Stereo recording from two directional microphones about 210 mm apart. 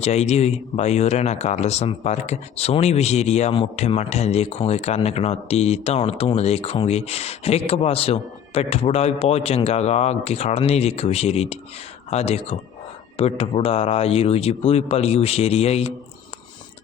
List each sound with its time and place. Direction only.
0.0 s speech: 30° left (ahead or behind)